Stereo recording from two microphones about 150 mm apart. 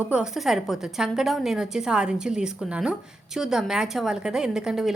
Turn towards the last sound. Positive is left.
turn(degrees=-5)  # may be behind; listen again after turning